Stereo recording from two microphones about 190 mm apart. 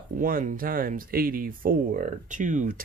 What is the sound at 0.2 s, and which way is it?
Speech, 45° right (ahead or behind).